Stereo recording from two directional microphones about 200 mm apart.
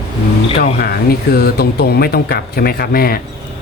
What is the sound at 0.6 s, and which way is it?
Speech, 50° left (ahead or behind).